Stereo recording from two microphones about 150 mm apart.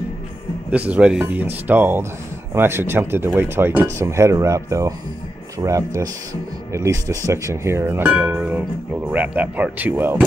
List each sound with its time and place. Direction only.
0.7 s speech: 10° right (ahead or behind)